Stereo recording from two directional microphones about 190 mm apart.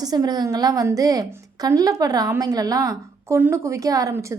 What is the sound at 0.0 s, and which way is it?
A woman's voice, 20° right (ahead or behind).